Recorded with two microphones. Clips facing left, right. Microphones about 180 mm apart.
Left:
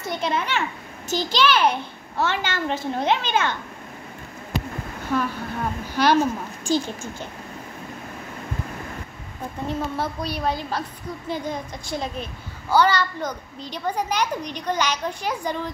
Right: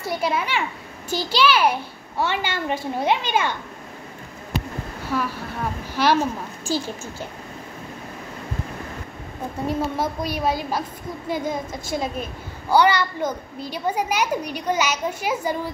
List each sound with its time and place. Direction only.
0.0 s a child's voice: 5° right (ahead or behind)
5.0 s a sound: 5° right (ahead or behind)
6.0 s a child's voice: 5° right (ahead or behind)
9.7 s a child's voice: 10° right (ahead or behind)